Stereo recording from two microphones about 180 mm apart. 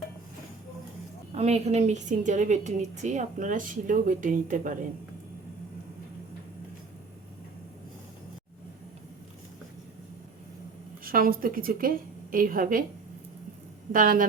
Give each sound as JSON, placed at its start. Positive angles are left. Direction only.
{"t": 1.4, "sound": "a woman's voice", "side_deg": -35}
{"t": 11.0, "sound": "a woman's voice", "side_deg": -55}
{"t": 13.9, "sound": "a woman's voice", "side_deg": -50}